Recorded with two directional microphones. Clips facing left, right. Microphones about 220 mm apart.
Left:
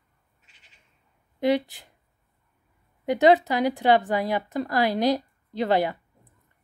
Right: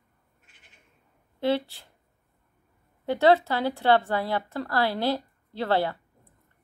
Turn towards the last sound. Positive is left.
turn(degrees=15)  # may be behind; listen again after turning